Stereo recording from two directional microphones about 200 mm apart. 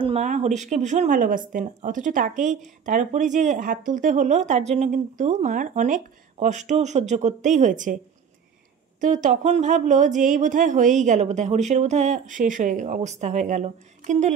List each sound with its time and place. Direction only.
0.0 s speech: 35° right (ahead or behind)
9.0 s speech: 40° right (ahead or behind)